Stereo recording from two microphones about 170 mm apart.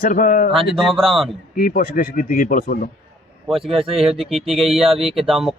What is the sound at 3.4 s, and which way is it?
Speech, centre (ahead or behind).